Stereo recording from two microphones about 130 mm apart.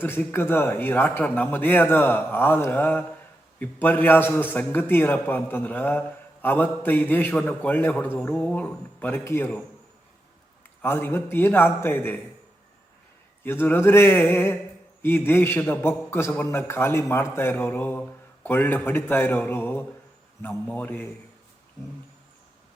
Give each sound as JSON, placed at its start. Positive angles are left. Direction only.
{"t": 0.0, "sound": "a man's voice", "side_deg": 15}
{"t": 10.8, "sound": "a man's voice", "side_deg": 15}
{"t": 13.4, "sound": "a man's voice", "side_deg": 15}